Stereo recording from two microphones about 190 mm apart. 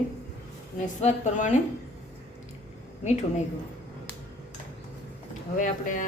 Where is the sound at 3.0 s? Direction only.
40° left (ahead or behind).